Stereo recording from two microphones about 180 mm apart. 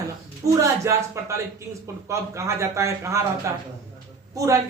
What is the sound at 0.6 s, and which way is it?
A man's voice, 15° right (ahead or behind).